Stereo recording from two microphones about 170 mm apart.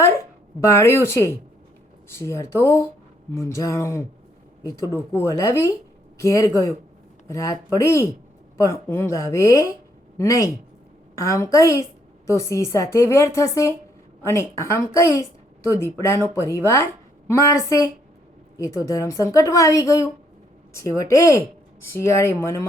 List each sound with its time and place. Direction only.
0.6 s a woman's voice: 15° left (ahead or behind)